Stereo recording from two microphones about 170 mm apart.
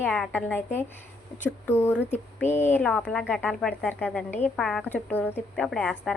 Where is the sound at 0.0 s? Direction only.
5° left (ahead or behind).